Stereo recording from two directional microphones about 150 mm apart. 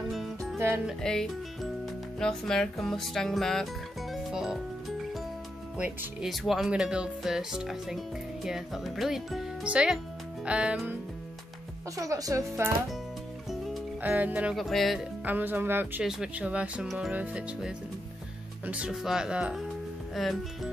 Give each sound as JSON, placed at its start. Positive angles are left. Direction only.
{"t": 0.1, "sound": "music", "side_deg": 0}
{"t": 0.8, "sound": "speech", "side_deg": 5}
{"t": 4.1, "sound": "music", "side_deg": -5}
{"t": 5.8, "sound": "speech", "side_deg": -5}
{"t": 12.0, "sound": "speech", "side_deg": -20}
{"t": 14.0, "sound": "speech", "side_deg": -10}
{"t": 15.2, "sound": "speech", "side_deg": -10}